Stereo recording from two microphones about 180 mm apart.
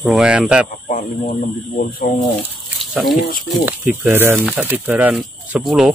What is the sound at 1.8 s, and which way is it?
Speech, 55° left (ahead or behind).